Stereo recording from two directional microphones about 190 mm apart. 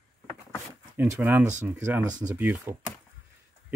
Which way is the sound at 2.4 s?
10° right (ahead or behind).